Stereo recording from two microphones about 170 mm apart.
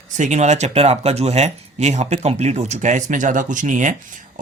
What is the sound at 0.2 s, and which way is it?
Speech, 45° right (ahead or behind).